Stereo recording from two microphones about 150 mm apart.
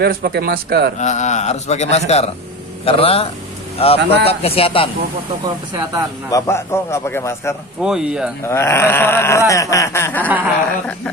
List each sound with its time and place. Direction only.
0.0 s speech: 90° right
0.9 s a man's voice: 50° left (ahead or behind)
6.3 s a sound: 20° left (ahead or behind)
7.8 s speech: 5° right (ahead or behind)
8.5 s a sound: 15° left (ahead or behind)
10.2 s speech: 10° right (ahead or behind)